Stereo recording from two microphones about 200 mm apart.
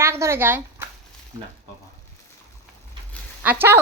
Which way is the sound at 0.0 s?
15° right (ahead or behind).